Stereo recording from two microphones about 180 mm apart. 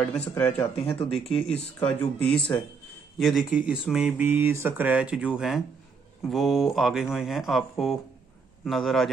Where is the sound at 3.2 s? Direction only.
Centre (ahead or behind).